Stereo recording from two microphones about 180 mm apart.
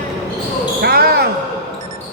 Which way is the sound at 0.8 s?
60° right (ahead or behind).